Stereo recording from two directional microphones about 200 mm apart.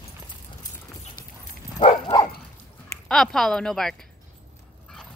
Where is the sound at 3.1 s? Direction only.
5° left (ahead or behind).